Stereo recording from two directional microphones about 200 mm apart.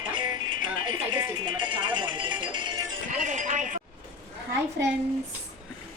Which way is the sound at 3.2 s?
40° right (ahead or behind).